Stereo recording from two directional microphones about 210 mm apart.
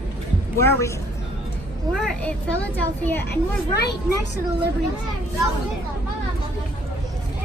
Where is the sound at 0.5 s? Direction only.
10° left (ahead or behind).